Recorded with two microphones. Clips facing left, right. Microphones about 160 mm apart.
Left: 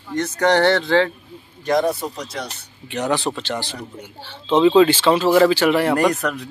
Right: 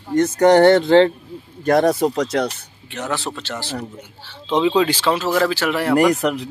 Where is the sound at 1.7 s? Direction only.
80° right.